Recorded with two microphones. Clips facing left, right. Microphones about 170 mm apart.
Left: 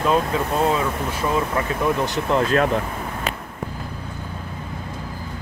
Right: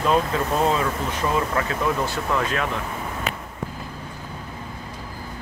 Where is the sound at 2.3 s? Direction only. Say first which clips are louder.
Left 7 dB; 35° left (ahead or behind).